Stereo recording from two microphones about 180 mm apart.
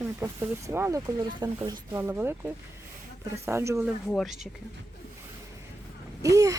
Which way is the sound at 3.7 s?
Centre (ahead or behind).